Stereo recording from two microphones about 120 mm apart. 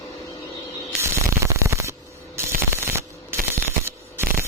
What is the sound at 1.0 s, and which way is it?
Static, 25° right (ahead or behind).